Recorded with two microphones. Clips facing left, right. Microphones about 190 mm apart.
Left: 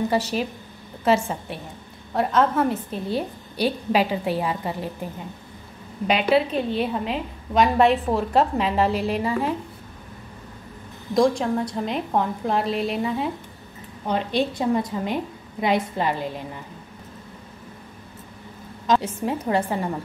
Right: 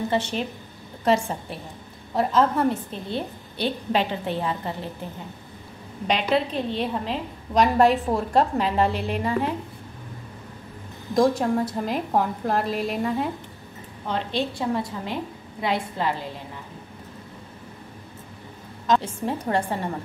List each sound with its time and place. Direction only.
0.1 s a woman's voice: 5° left (ahead or behind)
6.0 s a woman's voice: 5° left (ahead or behind)
8.9 s a woman's voice: 35° left (ahead or behind)
11.1 s a woman's voice: 5° right (ahead or behind)
14.0 s a woman's voice: 15° left (ahead or behind)
18.9 s a woman's voice: 5° left (ahead or behind)